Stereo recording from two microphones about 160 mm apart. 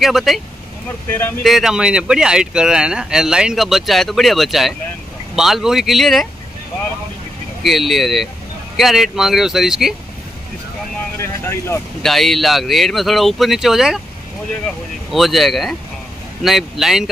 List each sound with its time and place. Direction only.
0.0 s speech: centre (ahead or behind)
1.0 s speech: 15° left (ahead or behind)
1.4 s speech: centre (ahead or behind)
7.6 s speech: centre (ahead or behind)
11.1 s speech: 15° left (ahead or behind)
12.0 s speech: centre (ahead or behind)
15.1 s speech: centre (ahead or behind)